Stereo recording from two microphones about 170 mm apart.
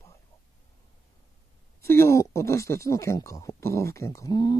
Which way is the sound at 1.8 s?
15° left (ahead or behind).